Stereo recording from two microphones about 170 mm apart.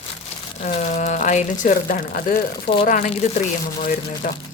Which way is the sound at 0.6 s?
45° left (ahead or behind).